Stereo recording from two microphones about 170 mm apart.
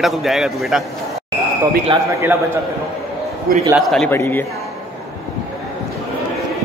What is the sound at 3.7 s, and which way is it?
Speech, centre (ahead or behind).